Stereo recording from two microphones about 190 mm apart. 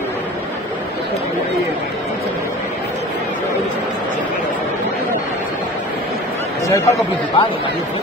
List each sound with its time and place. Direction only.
6.7 s speech: 15° left (ahead or behind)